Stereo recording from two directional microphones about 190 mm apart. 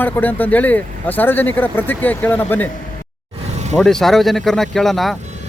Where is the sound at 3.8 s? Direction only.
Centre (ahead or behind).